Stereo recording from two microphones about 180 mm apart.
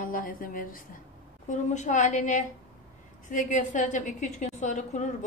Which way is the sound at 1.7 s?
40° left (ahead or behind).